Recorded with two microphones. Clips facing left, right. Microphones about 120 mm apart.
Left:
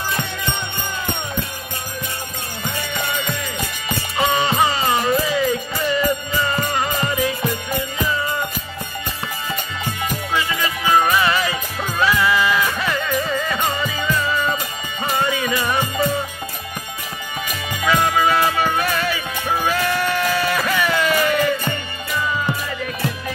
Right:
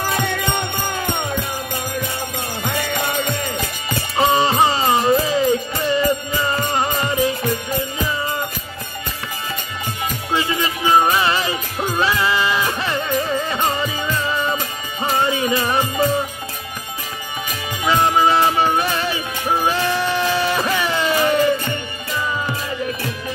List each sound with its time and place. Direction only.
0.0 s music: 60° right (ahead or behind)
2.6 s music: 65° right (ahead or behind)
4.2 s music: 35° right (ahead or behind)
10.3 s music: 25° right (ahead or behind)
17.8 s music: 25° right (ahead or behind)